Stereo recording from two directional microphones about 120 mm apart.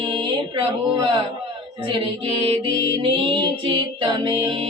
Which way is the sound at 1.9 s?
45° right (ahead or behind).